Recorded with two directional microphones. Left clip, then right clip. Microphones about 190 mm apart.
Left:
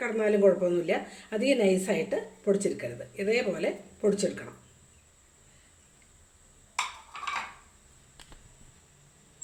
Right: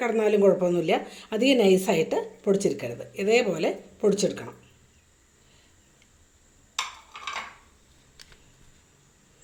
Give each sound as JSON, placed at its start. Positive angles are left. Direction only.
{"t": 0.0, "sound": "speech", "side_deg": -35}